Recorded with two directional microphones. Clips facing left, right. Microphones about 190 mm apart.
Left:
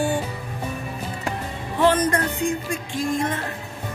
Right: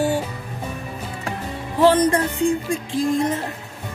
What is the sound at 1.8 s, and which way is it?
Speech, 35° right (ahead or behind).